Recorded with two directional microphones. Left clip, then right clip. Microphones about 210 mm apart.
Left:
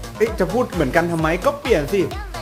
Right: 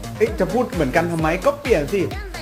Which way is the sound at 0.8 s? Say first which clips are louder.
Left 2 dB; 15° left (ahead or behind).